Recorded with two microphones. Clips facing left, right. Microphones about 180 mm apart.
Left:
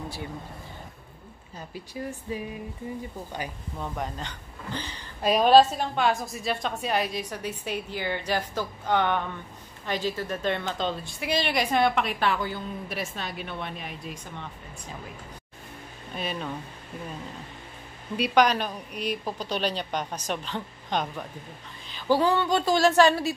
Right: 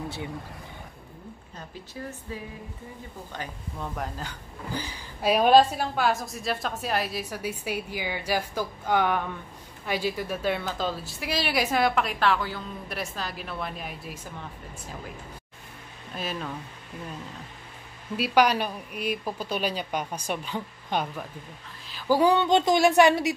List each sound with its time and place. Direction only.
1.7 s speech: 15° left (ahead or behind)
3.8 s a woman's voice: centre (ahead or behind)
16.2 s a woman's voice: centre (ahead or behind)
18.1 s a woman's voice: 5° right (ahead or behind)